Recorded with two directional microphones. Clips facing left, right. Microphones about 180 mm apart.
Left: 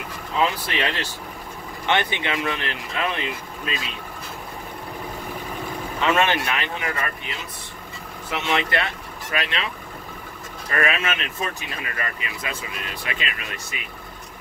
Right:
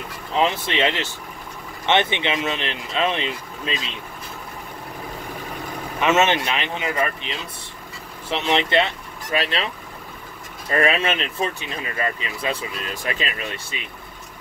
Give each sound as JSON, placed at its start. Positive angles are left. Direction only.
{"t": 0.4, "sound": "speech", "side_deg": -25}
{"t": 5.9, "sound": "speech", "side_deg": -20}
{"t": 10.7, "sound": "speech", "side_deg": -30}